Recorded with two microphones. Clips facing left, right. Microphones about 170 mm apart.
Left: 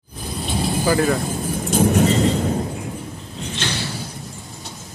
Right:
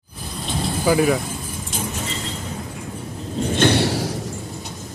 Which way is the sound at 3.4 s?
55° right (ahead or behind).